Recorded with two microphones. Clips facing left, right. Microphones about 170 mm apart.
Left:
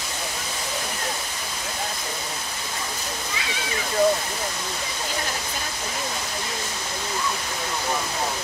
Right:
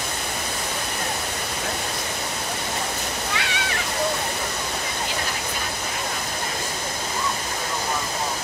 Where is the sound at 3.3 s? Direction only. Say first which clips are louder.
Right 3 dB; 70° right (ahead or behind).